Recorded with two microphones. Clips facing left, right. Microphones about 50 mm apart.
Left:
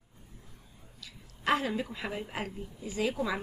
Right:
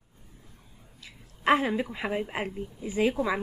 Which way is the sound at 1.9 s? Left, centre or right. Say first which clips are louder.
Right 6 dB; right.